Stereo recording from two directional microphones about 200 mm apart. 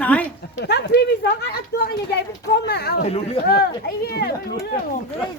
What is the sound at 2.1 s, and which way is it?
Speech, 55° left (ahead or behind).